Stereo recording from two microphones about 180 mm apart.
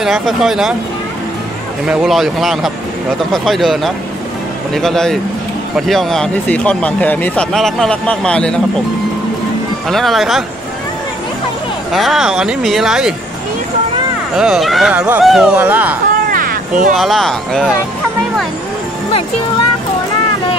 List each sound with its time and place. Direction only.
0.0 s speech: centre (ahead or behind)
1.9 s speech: 5° right (ahead or behind)
9.8 s speech: centre (ahead or behind)
11.9 s speech: centre (ahead or behind)
14.3 s speech: centre (ahead or behind)
16.3 s a sound: 50° right (ahead or behind)
16.9 s speech: centre (ahead or behind)